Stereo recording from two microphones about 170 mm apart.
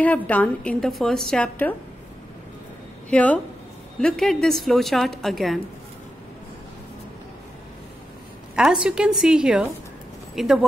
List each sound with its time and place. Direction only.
0.0 s a woman's voice: 10° left (ahead or behind)
3.1 s a woman's voice: 10° left (ahead or behind)
8.5 s a woman's voice: 5° right (ahead or behind)